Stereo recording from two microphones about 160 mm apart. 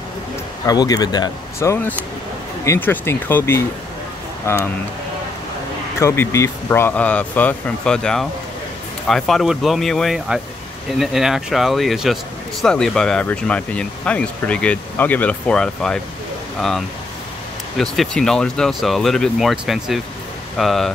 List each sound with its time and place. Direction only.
0.7 s speech: 25° left (ahead or behind)
5.9 s speech: 15° left (ahead or behind); by 20.9 s centre (ahead or behind)